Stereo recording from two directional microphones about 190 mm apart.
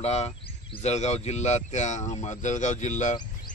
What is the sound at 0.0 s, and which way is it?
A man's voice, 35° left (ahead or behind).